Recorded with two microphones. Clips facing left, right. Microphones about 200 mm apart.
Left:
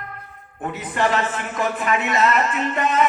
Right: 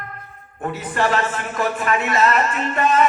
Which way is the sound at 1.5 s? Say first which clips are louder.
Right 1 dB; 20° left (ahead or behind).